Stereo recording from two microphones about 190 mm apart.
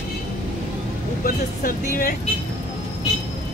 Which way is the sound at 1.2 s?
50° left (ahead or behind).